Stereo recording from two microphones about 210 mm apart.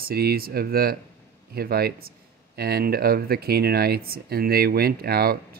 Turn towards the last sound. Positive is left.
turn(degrees=-45)  # may be behind; listen again after turning